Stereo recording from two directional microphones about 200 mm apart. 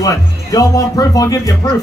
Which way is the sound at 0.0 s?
15° left (ahead or behind).